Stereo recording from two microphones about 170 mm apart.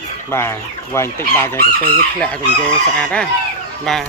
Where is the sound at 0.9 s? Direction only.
15° left (ahead or behind).